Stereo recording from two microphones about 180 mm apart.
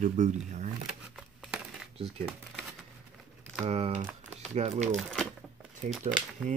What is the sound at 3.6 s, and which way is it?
Speech, 35° right (ahead or behind).